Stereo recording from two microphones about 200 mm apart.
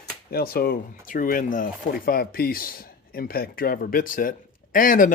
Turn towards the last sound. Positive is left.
turn(degrees=45)  # may be behind; listen again after turning